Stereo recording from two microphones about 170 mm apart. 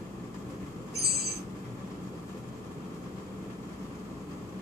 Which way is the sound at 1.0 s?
70° right (ahead or behind).